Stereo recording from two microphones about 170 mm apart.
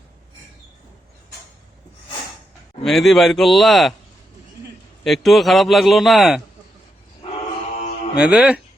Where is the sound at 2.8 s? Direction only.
Centre (ahead or behind).